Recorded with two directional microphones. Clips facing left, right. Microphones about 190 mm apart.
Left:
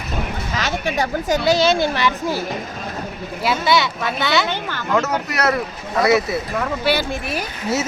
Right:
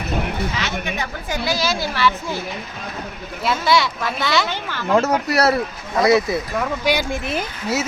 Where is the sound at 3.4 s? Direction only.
5° left (ahead or behind).